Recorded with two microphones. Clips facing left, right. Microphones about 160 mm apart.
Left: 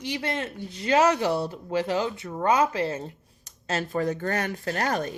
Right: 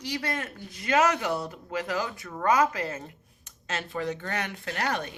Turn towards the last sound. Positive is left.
turn(degrees=40)  # may be behind; listen again after turning